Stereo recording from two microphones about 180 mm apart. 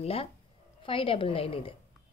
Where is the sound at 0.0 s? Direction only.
35° left (ahead or behind).